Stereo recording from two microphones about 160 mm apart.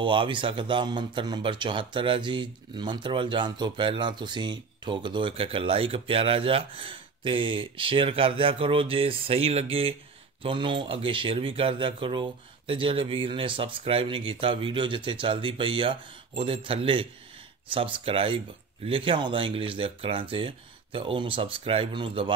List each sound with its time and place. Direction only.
0.0 s speech: 30° right (ahead or behind)